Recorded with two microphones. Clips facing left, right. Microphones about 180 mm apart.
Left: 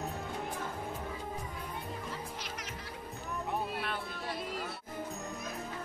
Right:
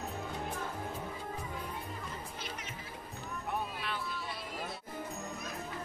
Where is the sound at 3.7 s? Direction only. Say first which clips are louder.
Left 2 dB; 50° left (ahead or behind).